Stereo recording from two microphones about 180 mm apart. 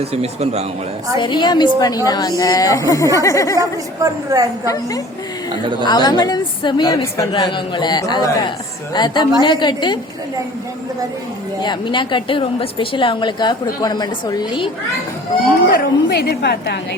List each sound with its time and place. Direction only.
0.0 s speech: 35° right (ahead or behind)
1.2 s a woman's voice: 25° left (ahead or behind)
3.6 s a woman's voice: 20° right (ahead or behind)
4.6 s a woman's voice: 20° left (ahead or behind)
11.6 s a woman's voice: 25° left (ahead or behind)
15.7 s a woman's voice: 60° left (ahead or behind)